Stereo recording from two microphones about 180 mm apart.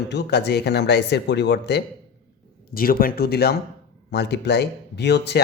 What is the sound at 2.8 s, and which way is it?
Speech, 55° left (ahead or behind).